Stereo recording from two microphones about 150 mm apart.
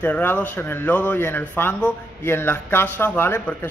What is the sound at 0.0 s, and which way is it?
Speech, 10° left (ahead or behind).